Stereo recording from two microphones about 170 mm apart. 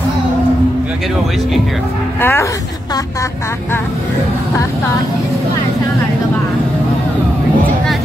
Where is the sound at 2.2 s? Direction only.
10° left (ahead or behind).